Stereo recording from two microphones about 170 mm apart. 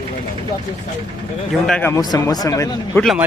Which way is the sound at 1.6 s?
10° left (ahead or behind).